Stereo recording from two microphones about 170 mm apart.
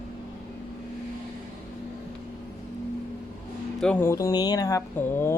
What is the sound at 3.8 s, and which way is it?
Speech, 10° left (ahead or behind).